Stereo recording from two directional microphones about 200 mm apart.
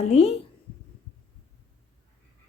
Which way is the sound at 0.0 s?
30° left (ahead or behind).